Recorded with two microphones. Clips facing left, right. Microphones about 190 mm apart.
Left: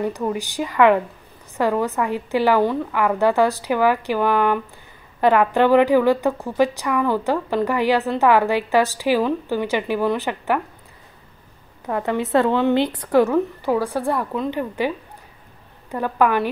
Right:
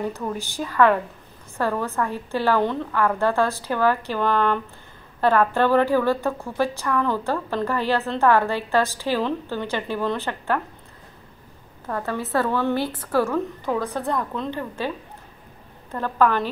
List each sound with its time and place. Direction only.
0.0 s a woman's voice: 15° left (ahead or behind)
11.9 s a woman's voice: 20° left (ahead or behind)
15.9 s a woman's voice: 15° left (ahead or behind)